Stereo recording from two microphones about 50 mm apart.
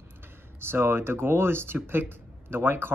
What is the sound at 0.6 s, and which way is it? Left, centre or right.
Speech, right.